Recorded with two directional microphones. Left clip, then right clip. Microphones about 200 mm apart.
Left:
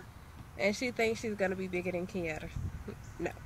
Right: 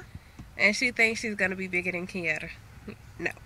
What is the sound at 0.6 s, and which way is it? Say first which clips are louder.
Speech: right 8 dB; 5° left (ahead or behind).